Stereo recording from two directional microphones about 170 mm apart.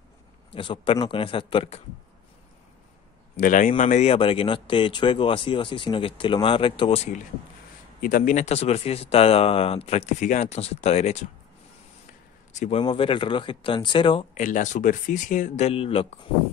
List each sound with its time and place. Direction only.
0.5 s speech: 30° left (ahead or behind)
3.3 s speech: 50° left (ahead or behind); by 7.0 s 30° left (ahead or behind)
8.0 s speech: 50° left (ahead or behind)
12.5 s speech: 35° left (ahead or behind)
14.3 s speech: 50° left (ahead or behind)